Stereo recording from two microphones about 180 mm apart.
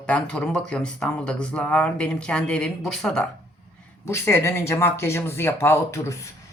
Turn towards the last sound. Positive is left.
turn(degrees=15)  # may be behind; listen again after turning